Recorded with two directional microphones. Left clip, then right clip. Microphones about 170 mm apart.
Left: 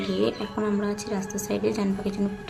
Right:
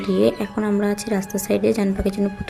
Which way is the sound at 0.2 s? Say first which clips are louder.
Right 7 dB; 25° right (ahead or behind).